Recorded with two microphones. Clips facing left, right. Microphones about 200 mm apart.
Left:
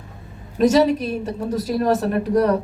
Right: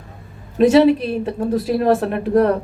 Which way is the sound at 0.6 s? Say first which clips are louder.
Right 4 dB; 40° left (ahead or behind).